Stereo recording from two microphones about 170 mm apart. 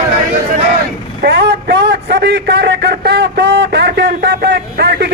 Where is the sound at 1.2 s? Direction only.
75° right (ahead or behind).